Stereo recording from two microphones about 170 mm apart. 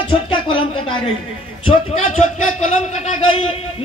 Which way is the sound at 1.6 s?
45° left (ahead or behind).